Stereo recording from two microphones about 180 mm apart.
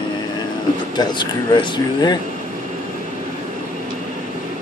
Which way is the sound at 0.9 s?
25° left (ahead or behind).